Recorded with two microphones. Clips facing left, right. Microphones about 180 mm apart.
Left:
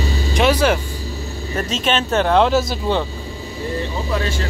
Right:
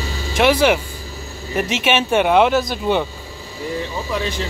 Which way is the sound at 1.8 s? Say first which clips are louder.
Right 1 dB; 10° right (ahead or behind).